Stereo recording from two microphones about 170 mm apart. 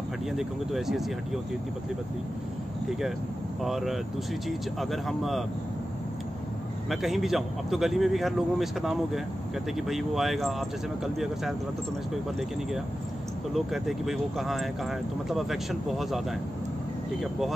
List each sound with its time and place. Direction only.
0.4 s speech: centre (ahead or behind)
3.6 s speech: centre (ahead or behind)
6.9 s speech: centre (ahead or behind)
13.5 s speech: centre (ahead or behind)